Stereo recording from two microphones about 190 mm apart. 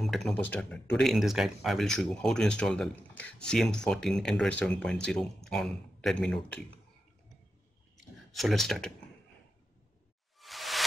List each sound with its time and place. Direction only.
0.0 s speech: centre (ahead or behind)
8.3 s speech: centre (ahead or behind)
10.4 s a sound: centre (ahead or behind)